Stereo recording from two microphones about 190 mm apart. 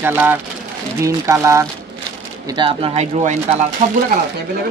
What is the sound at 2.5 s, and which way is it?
Speech, 25° right (ahead or behind).